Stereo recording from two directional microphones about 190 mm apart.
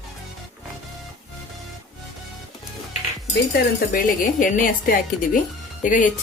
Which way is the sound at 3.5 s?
45° left (ahead or behind).